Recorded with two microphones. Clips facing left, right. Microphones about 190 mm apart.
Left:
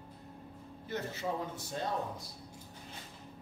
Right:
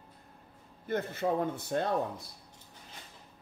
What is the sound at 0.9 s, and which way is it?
A man's voice, 55° right (ahead or behind).